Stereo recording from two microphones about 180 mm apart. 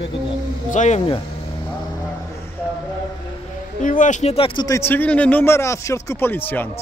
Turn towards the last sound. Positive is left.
turn(degrees=10)  # may be behind; listen again after turning